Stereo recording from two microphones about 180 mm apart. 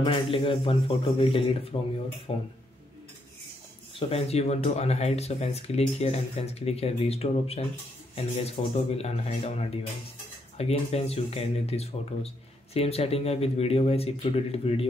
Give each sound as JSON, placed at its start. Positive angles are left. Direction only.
{"t": 0.0, "sound": "speech", "side_deg": 30}
{"t": 3.9, "sound": "speech", "side_deg": 35}